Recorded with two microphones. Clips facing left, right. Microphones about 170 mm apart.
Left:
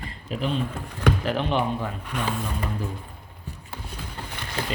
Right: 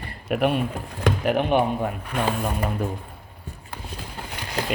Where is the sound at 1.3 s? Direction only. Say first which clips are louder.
Right 4 dB; 55° right (ahead or behind).